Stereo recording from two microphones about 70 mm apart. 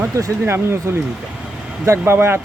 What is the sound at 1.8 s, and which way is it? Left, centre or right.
Speech, right.